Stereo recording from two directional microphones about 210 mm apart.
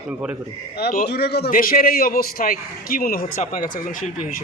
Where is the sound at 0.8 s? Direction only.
45° left (ahead or behind).